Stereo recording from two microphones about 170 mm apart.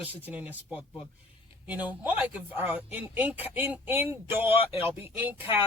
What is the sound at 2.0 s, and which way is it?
Speech, 10° right (ahead or behind).